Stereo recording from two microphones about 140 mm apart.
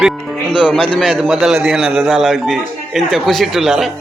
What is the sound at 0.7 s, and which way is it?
Speech, 5° left (ahead or behind).